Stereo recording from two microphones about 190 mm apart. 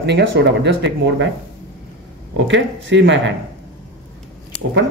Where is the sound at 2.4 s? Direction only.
70° right (ahead or behind).